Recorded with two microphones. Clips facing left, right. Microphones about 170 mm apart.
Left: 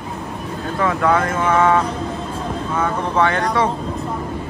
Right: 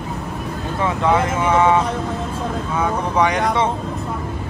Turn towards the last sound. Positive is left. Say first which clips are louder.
# even
turn(degrees=-20)  # may be behind; listen again after turning